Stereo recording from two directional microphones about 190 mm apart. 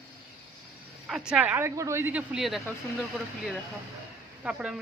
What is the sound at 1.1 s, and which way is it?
Speech, 5° right (ahead or behind).